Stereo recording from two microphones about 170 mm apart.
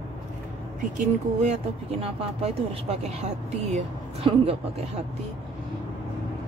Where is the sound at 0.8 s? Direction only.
45° right (ahead or behind).